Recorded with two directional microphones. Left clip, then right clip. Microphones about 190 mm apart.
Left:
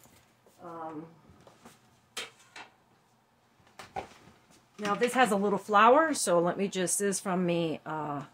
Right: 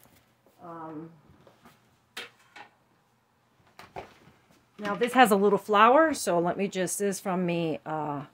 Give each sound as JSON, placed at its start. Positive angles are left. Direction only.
{"t": 5.1, "sound": "speech", "side_deg": -65}
{"t": 5.5, "sound": "speech", "side_deg": -45}